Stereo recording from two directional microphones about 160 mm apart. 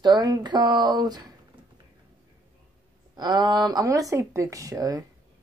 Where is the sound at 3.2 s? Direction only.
25° right (ahead or behind).